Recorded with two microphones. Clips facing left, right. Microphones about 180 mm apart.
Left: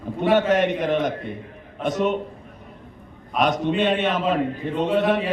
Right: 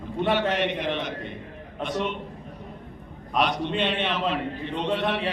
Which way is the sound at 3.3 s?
45° left (ahead or behind).